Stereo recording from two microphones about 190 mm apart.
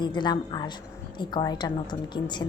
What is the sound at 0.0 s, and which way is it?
A woman's voice, 25° left (ahead or behind).